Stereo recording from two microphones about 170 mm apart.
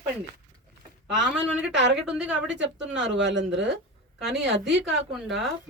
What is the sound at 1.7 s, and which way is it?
Speech, 90° right.